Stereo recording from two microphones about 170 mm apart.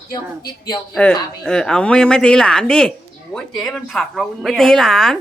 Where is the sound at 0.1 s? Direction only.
25° left (ahead or behind).